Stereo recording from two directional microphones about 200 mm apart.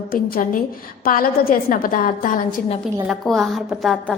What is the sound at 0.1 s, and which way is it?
A woman's voice, 45° left (ahead or behind).